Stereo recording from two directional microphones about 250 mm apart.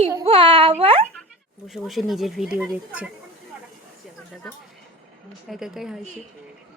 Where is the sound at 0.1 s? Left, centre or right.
Centre.